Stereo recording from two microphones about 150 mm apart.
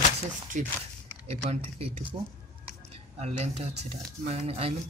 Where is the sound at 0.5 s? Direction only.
55° right (ahead or behind).